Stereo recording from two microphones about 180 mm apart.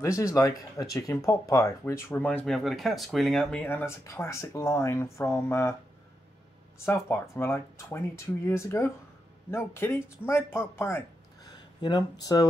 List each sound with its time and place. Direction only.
0.0 s speech: 15° left (ahead or behind)
6.9 s speech: 15° left (ahead or behind)